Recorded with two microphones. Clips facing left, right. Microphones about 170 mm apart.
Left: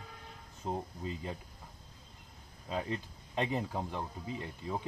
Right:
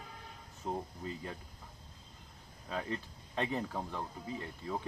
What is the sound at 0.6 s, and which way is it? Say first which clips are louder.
Speech: left 1 dB; 15° left (ahead or behind).